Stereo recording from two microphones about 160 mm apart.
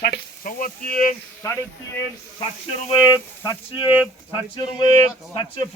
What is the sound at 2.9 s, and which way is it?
Speech, 25° left (ahead or behind).